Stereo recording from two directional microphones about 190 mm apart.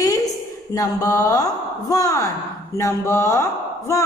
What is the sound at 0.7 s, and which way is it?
A woman's voice, 15° left (ahead or behind).